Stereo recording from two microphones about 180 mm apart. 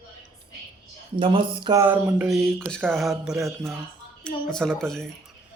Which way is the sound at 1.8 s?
15° right (ahead or behind).